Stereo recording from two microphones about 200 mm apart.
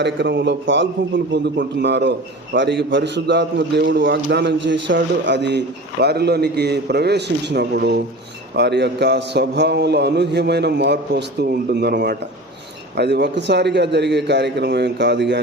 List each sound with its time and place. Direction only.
0.0 s a man's voice: 60° right (ahead or behind)